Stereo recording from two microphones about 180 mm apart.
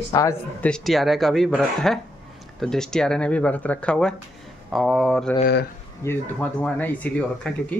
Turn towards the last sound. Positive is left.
turn(degrees=5)  # may be behind; listen again after turning